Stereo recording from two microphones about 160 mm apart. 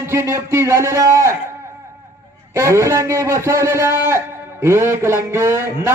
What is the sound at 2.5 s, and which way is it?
A man's voice, 20° right (ahead or behind).